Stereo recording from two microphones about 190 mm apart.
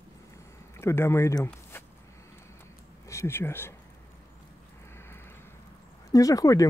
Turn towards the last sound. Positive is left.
turn(degrees=20)  # may be behind; listen again after turning